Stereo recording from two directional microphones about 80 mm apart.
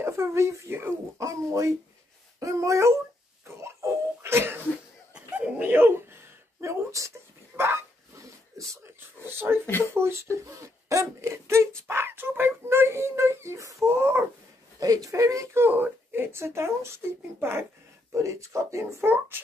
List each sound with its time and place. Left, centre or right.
0.0 s speech: right
1.2 s speech: right
5.1 s a sound: centre
5.7 s a sound: right
7.5 s dog: right
8.6 s speech: right
9.2 s speech: right
14.8 s speech: right
19.1 s speech: right